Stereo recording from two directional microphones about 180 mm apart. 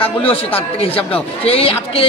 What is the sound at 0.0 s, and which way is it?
Speech, 30° left (ahead or behind).